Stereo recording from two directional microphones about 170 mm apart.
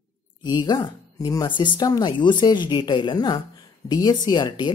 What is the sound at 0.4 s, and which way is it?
Speech, 25° left (ahead or behind).